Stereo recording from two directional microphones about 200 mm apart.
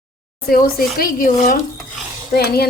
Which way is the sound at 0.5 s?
45° left (ahead or behind).